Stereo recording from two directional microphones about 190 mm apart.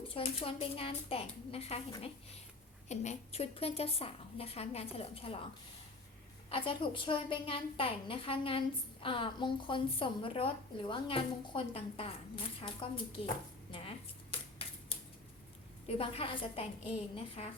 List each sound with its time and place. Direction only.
0.1 s a woman's voice: 30° left (ahead or behind)
6.5 s a woman's voice: 25° left (ahead or behind)
13.7 s a sound: 30° left (ahead or behind)
15.9 s a woman's voice: 30° left (ahead or behind)